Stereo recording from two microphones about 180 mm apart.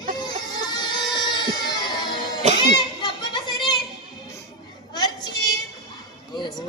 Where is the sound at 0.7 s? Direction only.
25° left (ahead or behind).